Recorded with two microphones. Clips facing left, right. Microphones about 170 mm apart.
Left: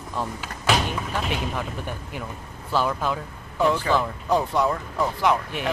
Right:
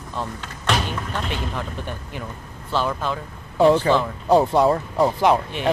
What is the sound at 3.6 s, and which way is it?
Speech, 30° right (ahead or behind).